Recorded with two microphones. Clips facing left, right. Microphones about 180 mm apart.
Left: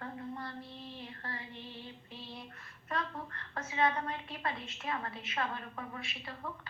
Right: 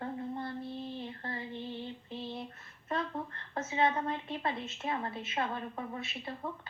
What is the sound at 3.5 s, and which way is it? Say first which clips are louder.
A woman's voice: right 2 dB; 25° right (ahead or behind).